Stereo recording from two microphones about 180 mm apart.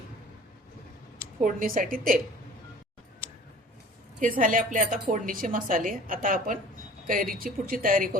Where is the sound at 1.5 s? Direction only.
50° right (ahead or behind).